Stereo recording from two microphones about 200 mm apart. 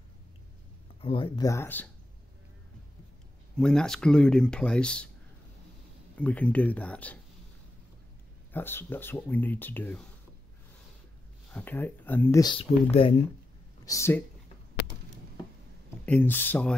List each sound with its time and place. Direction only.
1.0 s speech: 25° left (ahead or behind)
3.5 s speech: 5° left (ahead or behind)
6.1 s speech: 5° left (ahead or behind)
8.5 s speech: 10° left (ahead or behind)
11.5 s speech: 10° left (ahead or behind); by 13.1 s 25° left (ahead or behind)
13.8 s speech: 15° left (ahead or behind)
16.1 s speech: 10° left (ahead or behind)